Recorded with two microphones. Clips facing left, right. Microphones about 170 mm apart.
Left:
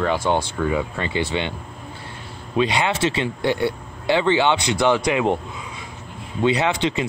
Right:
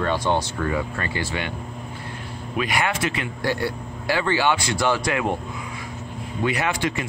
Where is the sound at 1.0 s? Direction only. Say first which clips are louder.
Left 4 dB; 20° left (ahead or behind).